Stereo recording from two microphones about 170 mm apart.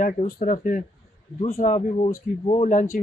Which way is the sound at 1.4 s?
35° left (ahead or behind).